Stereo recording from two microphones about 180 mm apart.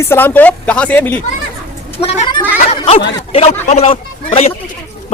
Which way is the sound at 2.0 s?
35° left (ahead or behind).